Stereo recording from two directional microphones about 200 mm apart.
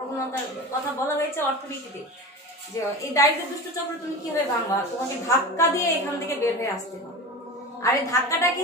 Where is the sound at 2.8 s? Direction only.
15° left (ahead or behind).